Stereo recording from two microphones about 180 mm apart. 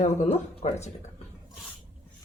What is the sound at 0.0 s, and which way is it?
Speech, 40° left (ahead or behind).